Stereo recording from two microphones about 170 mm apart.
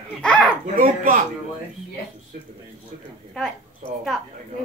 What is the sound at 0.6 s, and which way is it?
Speech, 55° right (ahead or behind).